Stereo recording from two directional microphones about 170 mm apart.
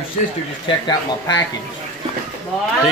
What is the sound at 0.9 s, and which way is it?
Speech, 25° left (ahead or behind).